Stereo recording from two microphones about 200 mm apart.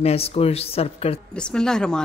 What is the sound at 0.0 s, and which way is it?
Speech, 30° left (ahead or behind).